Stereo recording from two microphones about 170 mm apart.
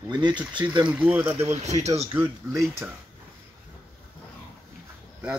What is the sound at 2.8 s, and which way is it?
Speech, 10° right (ahead or behind).